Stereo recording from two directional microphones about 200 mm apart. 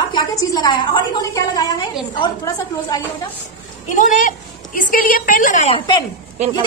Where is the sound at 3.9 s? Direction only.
40° left (ahead or behind).